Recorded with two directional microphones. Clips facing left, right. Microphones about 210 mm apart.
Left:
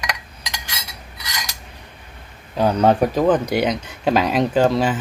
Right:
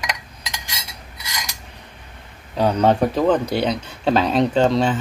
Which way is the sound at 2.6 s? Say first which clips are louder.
Left 1 dB; 5° left (ahead or behind).